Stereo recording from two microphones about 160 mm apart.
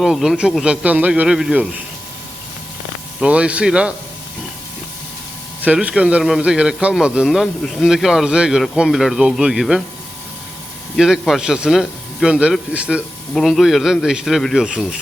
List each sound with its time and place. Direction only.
0.0 s speech: centre (ahead or behind)
3.2 s speech: 5° right (ahead or behind)
5.6 s speech: 5° right (ahead or behind)
10.9 s speech: centre (ahead or behind)